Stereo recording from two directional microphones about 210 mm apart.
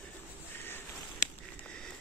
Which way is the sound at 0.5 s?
10° left (ahead or behind).